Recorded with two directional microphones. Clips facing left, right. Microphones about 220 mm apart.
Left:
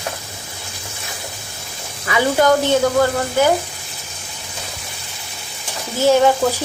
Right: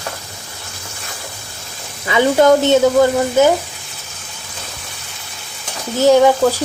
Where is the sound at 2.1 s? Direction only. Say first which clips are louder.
Right 4 dB; 25° right (ahead or behind).